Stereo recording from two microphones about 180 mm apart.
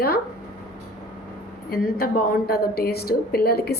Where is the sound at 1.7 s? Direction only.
55° left (ahead or behind).